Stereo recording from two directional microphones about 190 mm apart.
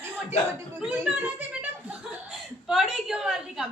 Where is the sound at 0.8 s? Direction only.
5° right (ahead or behind).